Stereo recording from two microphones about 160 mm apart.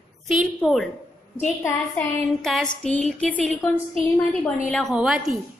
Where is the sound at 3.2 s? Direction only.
10° left (ahead or behind).